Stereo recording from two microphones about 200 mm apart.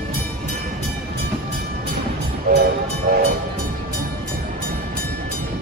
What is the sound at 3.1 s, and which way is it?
Train, 50° right (ahead or behind).